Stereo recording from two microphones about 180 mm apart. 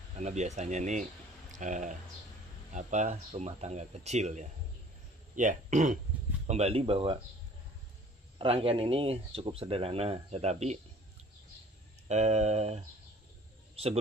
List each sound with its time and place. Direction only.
0.2 s a man's voice: 40° right (ahead or behind)
8.4 s speech: 30° right (ahead or behind)
12.1 s speech: 40° right (ahead or behind)